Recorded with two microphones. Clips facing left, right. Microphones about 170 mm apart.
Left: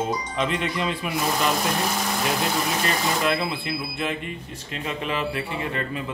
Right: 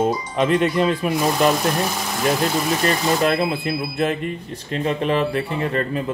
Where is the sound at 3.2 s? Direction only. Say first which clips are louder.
Right 5 dB; 45° right (ahead or behind).